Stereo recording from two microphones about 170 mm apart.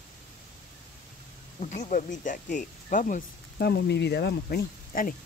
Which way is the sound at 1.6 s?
50° left (ahead or behind).